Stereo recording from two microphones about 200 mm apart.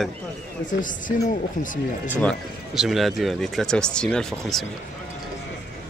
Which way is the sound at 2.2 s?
Centre (ahead or behind).